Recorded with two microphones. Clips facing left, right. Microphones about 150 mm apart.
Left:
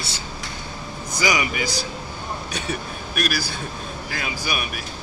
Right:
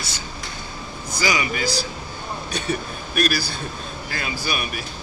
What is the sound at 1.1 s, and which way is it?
Speech, 20° left (ahead or behind).